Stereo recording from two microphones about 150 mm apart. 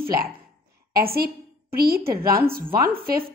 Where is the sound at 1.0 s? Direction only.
90° right.